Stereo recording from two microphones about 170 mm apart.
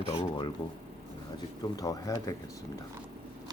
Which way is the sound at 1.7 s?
20° left (ahead or behind).